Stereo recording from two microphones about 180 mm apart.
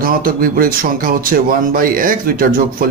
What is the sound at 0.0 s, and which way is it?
Speech, 50° right (ahead or behind).